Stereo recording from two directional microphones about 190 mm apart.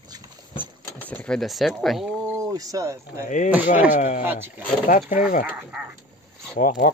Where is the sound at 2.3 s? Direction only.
20° right (ahead or behind).